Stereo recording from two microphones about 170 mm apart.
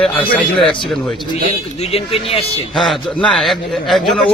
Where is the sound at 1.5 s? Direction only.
35° left (ahead or behind).